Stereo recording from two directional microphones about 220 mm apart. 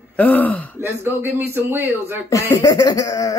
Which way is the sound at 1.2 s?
10° right (ahead or behind).